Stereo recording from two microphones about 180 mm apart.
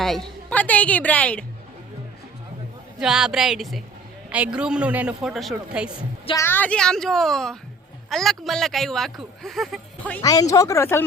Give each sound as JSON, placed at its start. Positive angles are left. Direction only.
{"t": 0.0, "sound": "a woman's voice", "side_deg": 0}
{"t": 3.0, "sound": "speech", "side_deg": -5}
{"t": 6.3, "sound": "speech", "side_deg": 15}
{"t": 10.2, "sound": "speech", "side_deg": 20}